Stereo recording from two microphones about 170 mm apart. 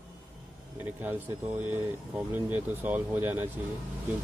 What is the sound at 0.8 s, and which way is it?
Speech, 10° right (ahead or behind).